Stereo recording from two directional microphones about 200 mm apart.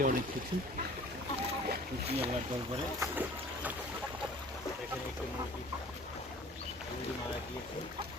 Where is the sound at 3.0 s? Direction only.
10° right (ahead or behind).